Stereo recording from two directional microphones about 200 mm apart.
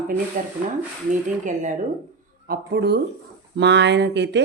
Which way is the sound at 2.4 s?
50° right (ahead or behind).